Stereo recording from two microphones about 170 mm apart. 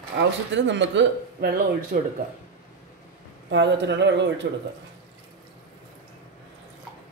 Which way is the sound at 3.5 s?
90° right.